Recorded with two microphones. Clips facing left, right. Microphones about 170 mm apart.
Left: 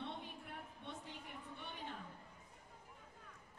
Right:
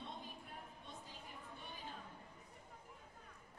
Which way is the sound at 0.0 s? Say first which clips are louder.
Left 3 dB; 70° left (ahead or behind).